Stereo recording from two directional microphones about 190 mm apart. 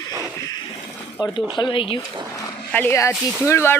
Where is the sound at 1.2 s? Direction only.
25° left (ahead or behind).